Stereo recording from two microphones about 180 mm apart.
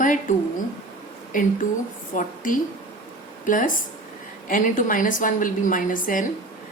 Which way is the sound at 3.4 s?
45° left (ahead or behind).